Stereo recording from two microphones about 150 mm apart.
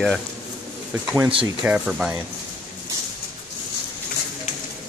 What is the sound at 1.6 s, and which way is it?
Speech, 5° right (ahead or behind).